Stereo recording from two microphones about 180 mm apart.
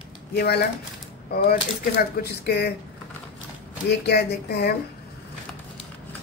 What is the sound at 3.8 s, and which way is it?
Speech, 65° left (ahead or behind).